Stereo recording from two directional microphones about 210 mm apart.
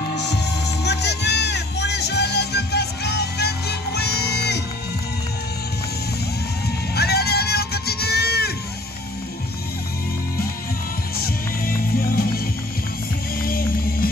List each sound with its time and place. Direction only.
0.1 s music: 55° left (ahead or behind)
7.0 s a sound: 50° left (ahead or behind)
11.2 s music: 45° left (ahead or behind)
13.4 s music: 45° left (ahead or behind)